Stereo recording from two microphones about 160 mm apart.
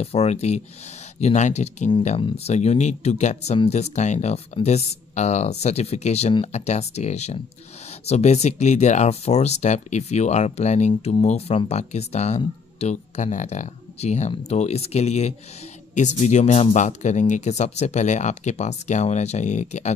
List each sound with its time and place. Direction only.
0.0 s speech: 40° left (ahead or behind)